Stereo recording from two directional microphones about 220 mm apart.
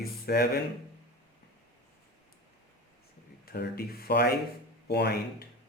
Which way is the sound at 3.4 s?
45° left (ahead or behind).